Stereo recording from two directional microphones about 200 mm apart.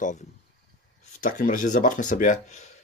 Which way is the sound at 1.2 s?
40° left (ahead or behind).